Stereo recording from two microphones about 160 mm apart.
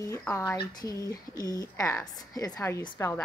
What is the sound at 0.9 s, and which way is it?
Speech, 20° right (ahead or behind).